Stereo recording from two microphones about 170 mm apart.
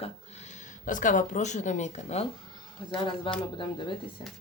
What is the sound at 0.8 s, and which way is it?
Speech, 50° left (ahead or behind).